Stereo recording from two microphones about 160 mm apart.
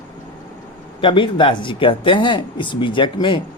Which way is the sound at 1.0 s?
30° left (ahead or behind).